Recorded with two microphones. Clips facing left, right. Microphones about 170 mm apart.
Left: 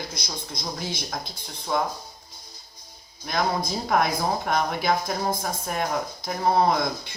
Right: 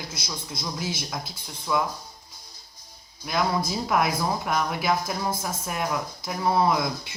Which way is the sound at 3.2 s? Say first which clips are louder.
Even; 40° left (ahead or behind).